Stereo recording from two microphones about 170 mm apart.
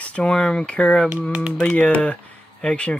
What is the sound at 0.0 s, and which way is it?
Speech, 5° left (ahead or behind).